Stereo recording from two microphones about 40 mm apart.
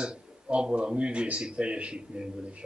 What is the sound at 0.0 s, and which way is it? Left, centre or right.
A man's voice, right.